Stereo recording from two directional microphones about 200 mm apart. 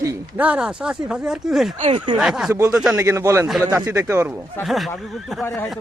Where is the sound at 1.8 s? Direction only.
30° right (ahead or behind).